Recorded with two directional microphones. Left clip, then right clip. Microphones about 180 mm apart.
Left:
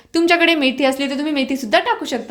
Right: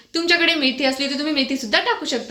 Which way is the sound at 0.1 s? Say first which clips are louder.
Left 3 dB; 60° left (ahead or behind).